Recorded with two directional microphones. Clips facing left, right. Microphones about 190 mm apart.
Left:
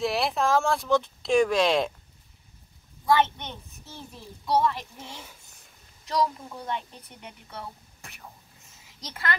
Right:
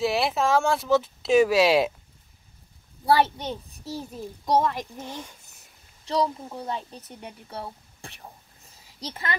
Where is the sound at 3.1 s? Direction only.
35° right (ahead or behind).